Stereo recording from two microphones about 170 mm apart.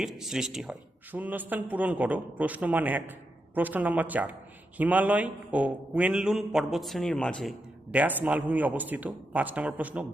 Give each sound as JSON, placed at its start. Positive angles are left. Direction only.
{"t": 0.0, "sound": "a man's voice", "side_deg": 0}
{"t": 7.9, "sound": "a man's voice", "side_deg": -10}